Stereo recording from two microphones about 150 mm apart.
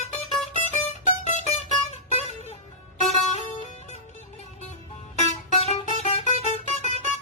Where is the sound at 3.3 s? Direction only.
45° left (ahead or behind).